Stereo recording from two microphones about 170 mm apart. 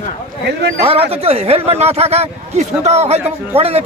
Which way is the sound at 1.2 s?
35° right (ahead or behind).